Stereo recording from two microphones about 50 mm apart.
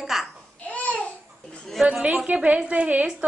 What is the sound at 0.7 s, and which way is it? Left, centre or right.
Babbling, left.